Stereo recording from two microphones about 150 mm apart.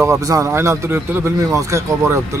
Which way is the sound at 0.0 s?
20° right (ahead or behind).